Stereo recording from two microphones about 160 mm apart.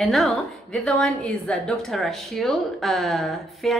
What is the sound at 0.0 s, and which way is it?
A woman's voice, centre (ahead or behind).